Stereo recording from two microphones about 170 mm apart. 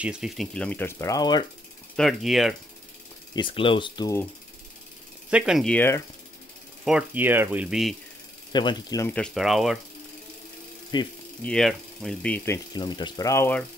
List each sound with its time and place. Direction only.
0.0 s speech: 5° right (ahead or behind)
0.9 s speech: 20° left (ahead or behind)
2.0 s speech: centre (ahead or behind)
3.3 s speech: 30° left (ahead or behind)
5.3 s speech: 5° right (ahead or behind); by 6.0 s 15° left (ahead or behind)
6.8 s speech: 5° right (ahead or behind)
8.5 s speech: 25° left (ahead or behind)
9.1 s speech: 5° left (ahead or behind)
10.9 s speech: 25° left (ahead or behind)
11.4 s speech: 5° left (ahead or behind)
12.7 s speech: 25° left (ahead or behind)